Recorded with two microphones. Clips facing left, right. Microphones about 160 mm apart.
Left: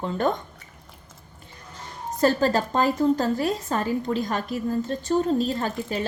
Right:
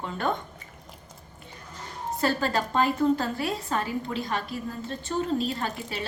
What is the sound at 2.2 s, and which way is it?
A woman's voice, 40° left (ahead or behind).